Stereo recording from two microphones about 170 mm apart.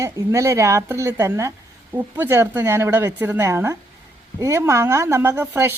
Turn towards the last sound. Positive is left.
turn(degrees=-15)  # may be behind; listen again after turning